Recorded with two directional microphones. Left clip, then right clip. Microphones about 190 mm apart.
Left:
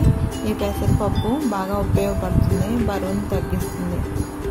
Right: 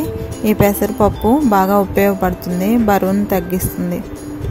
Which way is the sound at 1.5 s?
45° right (ahead or behind).